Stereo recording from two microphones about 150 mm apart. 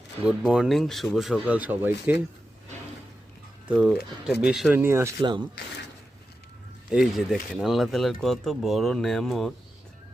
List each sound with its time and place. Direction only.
0.3 s speech: 5° right (ahead or behind)
3.7 s speech: 5° right (ahead or behind)
4.8 s speech: 15° right (ahead or behind)
6.9 s speech: 5° right (ahead or behind)